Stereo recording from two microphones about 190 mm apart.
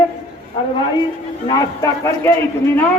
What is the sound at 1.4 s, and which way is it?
Speech, 20° left (ahead or behind).